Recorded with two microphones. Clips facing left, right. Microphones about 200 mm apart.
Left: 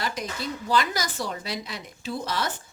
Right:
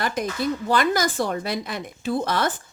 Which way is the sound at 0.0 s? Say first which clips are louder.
Right 6 dB; 50° right (ahead or behind).